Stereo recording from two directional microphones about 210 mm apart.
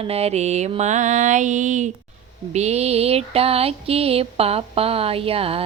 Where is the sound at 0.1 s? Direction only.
30° right (ahead or behind).